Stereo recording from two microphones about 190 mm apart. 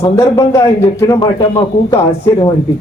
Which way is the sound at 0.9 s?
15° left (ahead or behind).